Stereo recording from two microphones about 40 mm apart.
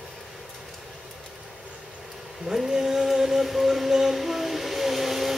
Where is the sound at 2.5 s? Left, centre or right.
Centre.